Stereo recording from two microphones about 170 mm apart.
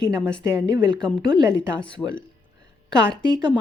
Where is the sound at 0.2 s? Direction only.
5° left (ahead or behind).